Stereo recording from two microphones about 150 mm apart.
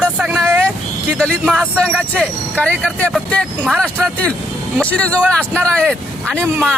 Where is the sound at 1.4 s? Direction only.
5° right (ahead or behind).